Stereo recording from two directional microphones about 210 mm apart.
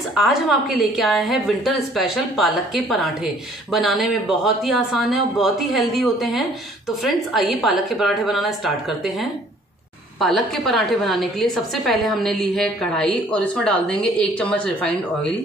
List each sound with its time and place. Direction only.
0.1 s a woman's voice: centre (ahead or behind)